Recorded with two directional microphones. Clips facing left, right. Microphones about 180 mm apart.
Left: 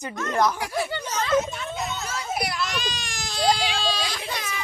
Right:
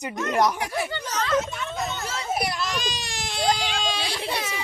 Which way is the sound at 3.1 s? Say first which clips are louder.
Left 2 dB; 25° right (ahead or behind).